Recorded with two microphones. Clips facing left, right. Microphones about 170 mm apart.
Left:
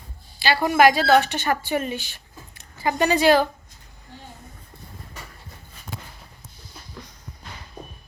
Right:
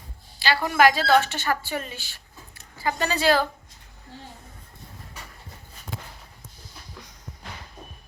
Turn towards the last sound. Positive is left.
turn(degrees=-10)  # may be behind; listen again after turning